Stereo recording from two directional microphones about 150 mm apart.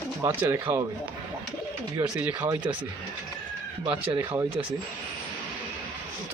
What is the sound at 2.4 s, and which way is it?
Speech, 30° right (ahead or behind).